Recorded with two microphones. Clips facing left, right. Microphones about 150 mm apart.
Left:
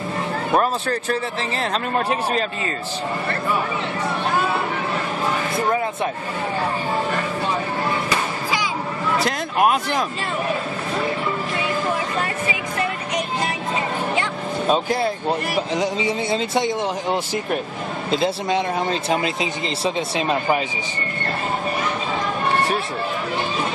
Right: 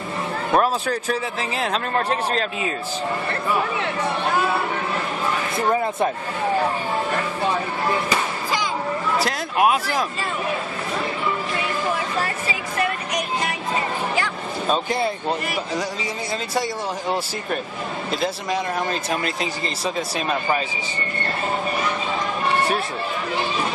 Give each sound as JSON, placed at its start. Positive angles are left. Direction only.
{"t": 0.5, "sound": "speech", "side_deg": 0}
{"t": 9.1, "sound": "a sound", "side_deg": 0}
{"t": 14.9, "sound": "speech", "side_deg": 0}
{"t": 15.7, "sound": "speech", "side_deg": 20}